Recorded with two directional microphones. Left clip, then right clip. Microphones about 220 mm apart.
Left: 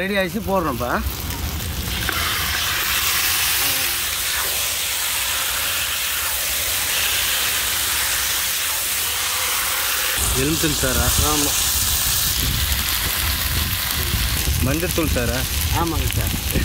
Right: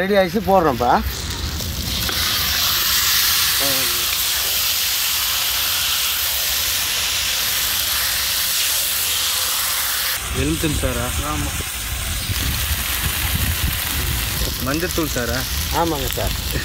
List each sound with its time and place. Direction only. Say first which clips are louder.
0.0 s speech: right 5 dB; 20° right (ahead or behind)